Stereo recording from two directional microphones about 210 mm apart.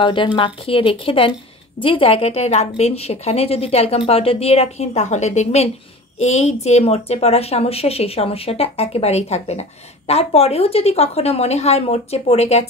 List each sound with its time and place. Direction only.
0.0 s a woman's voice: 25° left (ahead or behind)